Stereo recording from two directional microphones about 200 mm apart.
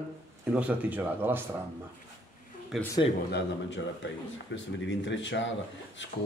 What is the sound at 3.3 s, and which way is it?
A man's voice, 65° left (ahead or behind).